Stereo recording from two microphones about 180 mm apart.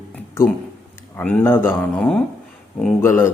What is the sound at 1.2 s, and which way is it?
Speech, 10° left (ahead or behind).